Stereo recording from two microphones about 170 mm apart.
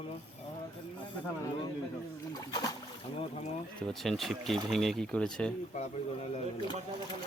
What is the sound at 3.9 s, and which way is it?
Speech, centre (ahead or behind).